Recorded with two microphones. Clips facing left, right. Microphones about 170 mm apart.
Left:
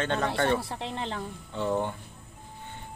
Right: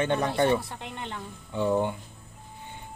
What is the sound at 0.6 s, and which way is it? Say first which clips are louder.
Speech: left 4 dB; 25° left (ahead or behind).